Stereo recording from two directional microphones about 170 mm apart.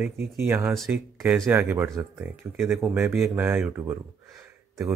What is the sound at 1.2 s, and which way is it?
Speech, centre (ahead or behind).